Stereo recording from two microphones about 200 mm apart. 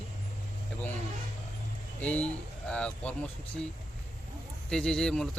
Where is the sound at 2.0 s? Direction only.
5° left (ahead or behind).